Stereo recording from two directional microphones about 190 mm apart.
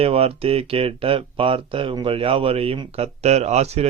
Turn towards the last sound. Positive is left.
turn(degrees=-35)  # may be behind; listen again after turning